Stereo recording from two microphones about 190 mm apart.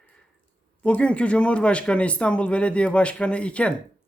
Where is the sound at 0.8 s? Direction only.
5° left (ahead or behind).